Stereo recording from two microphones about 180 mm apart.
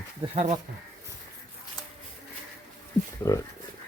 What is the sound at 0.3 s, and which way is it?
Speech, 40° right (ahead or behind).